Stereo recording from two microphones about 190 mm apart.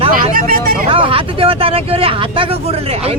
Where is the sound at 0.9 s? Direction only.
30° right (ahead or behind).